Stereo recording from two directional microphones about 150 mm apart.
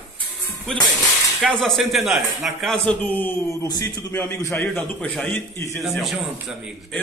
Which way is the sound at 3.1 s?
15° left (ahead or behind).